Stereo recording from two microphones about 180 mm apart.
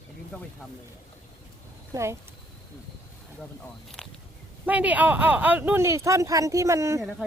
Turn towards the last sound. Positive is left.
turn(degrees=-15)  # may be behind; listen again after turning